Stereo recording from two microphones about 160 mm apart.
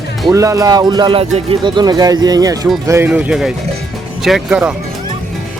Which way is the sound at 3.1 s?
5° right (ahead or behind).